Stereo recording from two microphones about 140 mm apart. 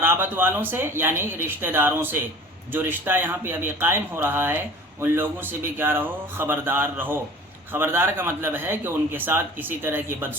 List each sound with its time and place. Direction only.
0.0 s speech: 15° right (ahead or behind)